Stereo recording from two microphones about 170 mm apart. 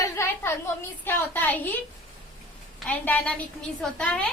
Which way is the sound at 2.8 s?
10° left (ahead or behind).